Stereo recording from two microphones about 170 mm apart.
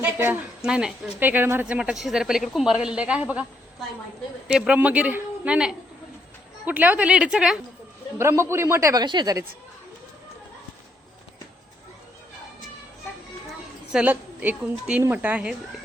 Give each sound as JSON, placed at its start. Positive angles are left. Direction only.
{"t": 0.0, "sound": "a woman's voice", "side_deg": -10}
{"t": 8.2, "sound": "a woman's voice", "side_deg": -15}
{"t": 13.9, "sound": "a woman's voice", "side_deg": -10}